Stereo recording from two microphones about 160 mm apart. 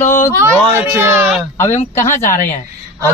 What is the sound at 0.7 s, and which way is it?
Speech, 15° right (ahead or behind).